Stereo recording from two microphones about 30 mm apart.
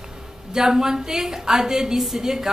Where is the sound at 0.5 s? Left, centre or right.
Centre.